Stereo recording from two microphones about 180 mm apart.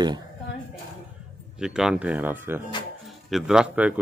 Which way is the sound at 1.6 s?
5° right (ahead or behind).